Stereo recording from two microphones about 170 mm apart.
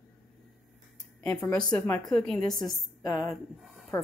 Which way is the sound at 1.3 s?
5° left (ahead or behind).